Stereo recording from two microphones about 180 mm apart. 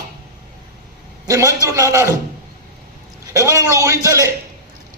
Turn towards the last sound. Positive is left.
turn(degrees=-15)  # may be behind; listen again after turning